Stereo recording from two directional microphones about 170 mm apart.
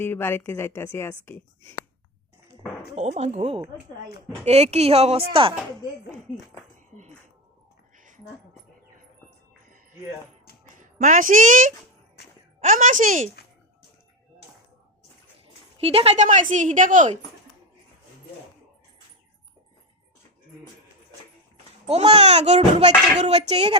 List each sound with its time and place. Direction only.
0.0 s a woman's voice: 15° left (ahead or behind)
2.9 s speech: 40° right (ahead or behind)
7.9 s a sound: 50° right (ahead or behind)
10.8 s a woman's voice: 50° right (ahead or behind)
12.2 s a sound: 75° left (ahead or behind)
12.5 s a woman's voice: 50° right (ahead or behind)
15.8 s a woman's voice: 35° right (ahead or behind)
21.8 s speech: 35° right (ahead or behind)